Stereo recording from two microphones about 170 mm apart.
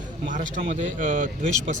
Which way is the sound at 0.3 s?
50° right (ahead or behind).